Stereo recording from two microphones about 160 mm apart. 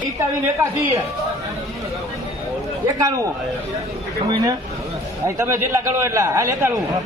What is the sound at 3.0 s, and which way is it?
Speech, 20° right (ahead or behind).